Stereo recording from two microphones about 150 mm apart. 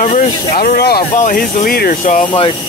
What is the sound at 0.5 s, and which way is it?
Speech, 80° left.